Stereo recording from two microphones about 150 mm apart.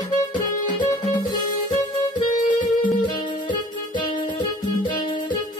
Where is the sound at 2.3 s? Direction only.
60° left (ahead or behind).